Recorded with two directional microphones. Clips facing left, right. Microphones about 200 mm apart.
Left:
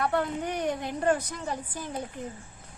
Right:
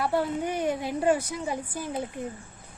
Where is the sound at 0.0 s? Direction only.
5° right (ahead or behind).